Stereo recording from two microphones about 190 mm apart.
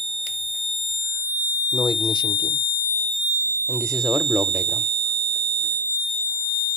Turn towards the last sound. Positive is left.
turn(degrees=0)  # may be behind; listen again after turning